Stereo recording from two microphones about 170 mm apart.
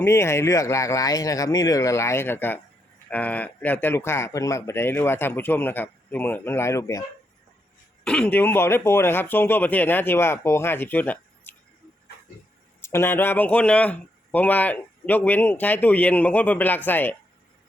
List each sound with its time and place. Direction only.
0.0 s speech: 15° left (ahead or behind)
8.0 s speech: 5° left (ahead or behind)
12.8 s speech: 15° left (ahead or behind)